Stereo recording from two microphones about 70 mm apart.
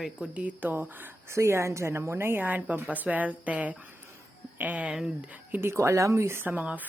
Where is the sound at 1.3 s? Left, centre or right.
Right.